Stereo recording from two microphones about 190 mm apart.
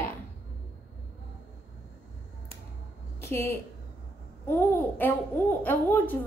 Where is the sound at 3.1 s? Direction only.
15° left (ahead or behind).